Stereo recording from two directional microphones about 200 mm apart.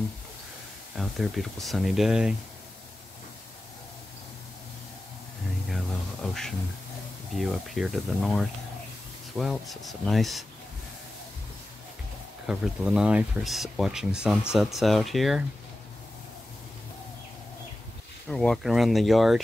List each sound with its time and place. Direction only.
0.9 s speech: centre (ahead or behind)
5.7 s a sound: centre (ahead or behind)
7.3 s speech: centre (ahead or behind)
12.4 s speech: 5° right (ahead or behind)
18.3 s speech: centre (ahead or behind)